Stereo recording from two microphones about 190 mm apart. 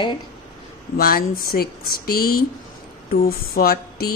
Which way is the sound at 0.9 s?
50° left (ahead or behind).